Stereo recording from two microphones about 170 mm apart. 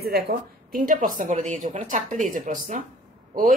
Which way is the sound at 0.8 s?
50° right (ahead or behind).